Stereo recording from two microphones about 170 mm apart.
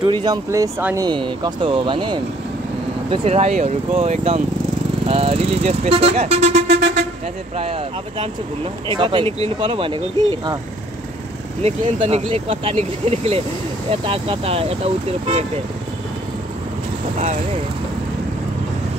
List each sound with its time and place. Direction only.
0.0 s speech: 25° right (ahead or behind)
11.6 s speech: 40° right (ahead or behind)